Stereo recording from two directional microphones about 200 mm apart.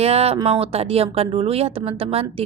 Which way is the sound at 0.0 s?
30° right (ahead or behind).